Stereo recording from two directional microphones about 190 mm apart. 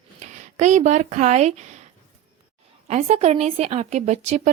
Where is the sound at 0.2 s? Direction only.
40° right (ahead or behind).